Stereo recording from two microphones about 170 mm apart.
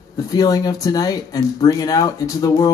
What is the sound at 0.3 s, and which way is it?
Speech, 20° left (ahead or behind).